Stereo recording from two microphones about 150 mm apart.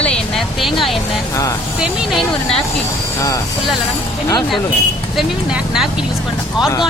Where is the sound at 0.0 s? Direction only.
5° left (ahead or behind).